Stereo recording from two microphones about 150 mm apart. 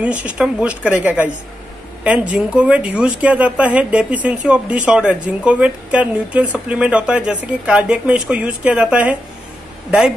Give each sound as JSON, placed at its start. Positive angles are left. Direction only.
{"t": 0.0, "sound": "speech", "side_deg": -10}